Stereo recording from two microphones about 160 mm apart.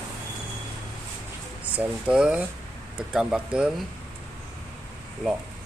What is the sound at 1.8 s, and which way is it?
Speech, 5° right (ahead or behind).